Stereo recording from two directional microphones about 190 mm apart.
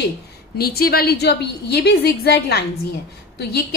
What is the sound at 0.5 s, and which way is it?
A woman's voice, 55° left (ahead or behind).